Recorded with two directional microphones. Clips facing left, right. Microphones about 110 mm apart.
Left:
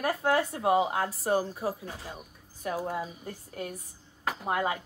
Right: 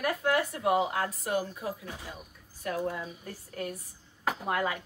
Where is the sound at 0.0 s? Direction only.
30° left (ahead or behind).